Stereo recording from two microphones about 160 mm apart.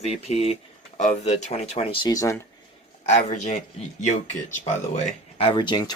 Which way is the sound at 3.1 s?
50° left (ahead or behind).